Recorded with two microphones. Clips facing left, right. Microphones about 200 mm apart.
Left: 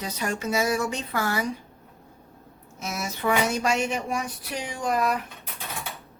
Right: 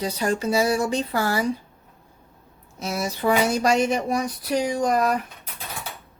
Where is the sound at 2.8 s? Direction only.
30° right (ahead or behind).